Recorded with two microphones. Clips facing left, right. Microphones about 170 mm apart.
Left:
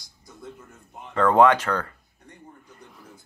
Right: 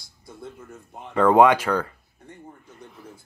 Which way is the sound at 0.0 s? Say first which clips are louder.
Right 4 dB; 30° right (ahead or behind).